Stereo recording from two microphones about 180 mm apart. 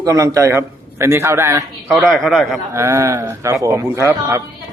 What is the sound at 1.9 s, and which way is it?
Speech, centre (ahead or behind).